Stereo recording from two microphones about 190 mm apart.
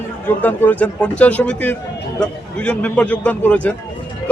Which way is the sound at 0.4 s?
10° left (ahead or behind).